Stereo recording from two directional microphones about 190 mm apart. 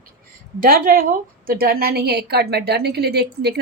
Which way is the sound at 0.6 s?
45° right (ahead or behind).